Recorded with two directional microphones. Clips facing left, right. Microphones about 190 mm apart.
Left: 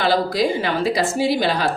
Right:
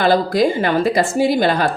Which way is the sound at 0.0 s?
50° right (ahead or behind).